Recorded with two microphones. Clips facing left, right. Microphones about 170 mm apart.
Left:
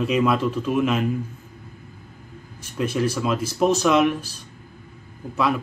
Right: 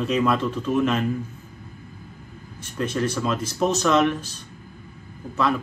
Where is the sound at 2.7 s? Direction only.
5° left (ahead or behind).